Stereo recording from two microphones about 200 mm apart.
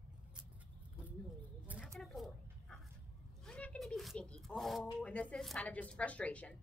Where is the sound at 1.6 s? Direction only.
5° right (ahead or behind).